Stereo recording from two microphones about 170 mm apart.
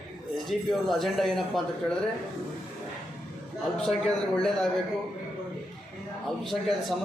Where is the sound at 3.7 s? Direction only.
5° left (ahead or behind).